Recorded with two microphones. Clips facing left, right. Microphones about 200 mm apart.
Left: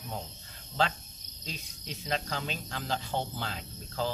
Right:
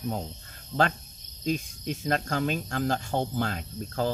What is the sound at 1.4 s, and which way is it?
Cricket, 50° right (ahead or behind).